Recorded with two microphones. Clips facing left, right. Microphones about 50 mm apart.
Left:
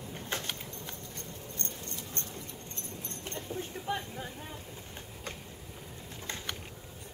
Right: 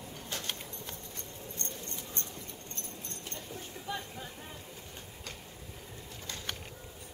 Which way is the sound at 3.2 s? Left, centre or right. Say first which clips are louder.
Left 7 dB; left.